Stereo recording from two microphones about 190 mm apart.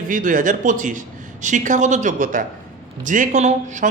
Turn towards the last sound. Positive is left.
turn(degrees=-40)  # may be behind; listen again after turning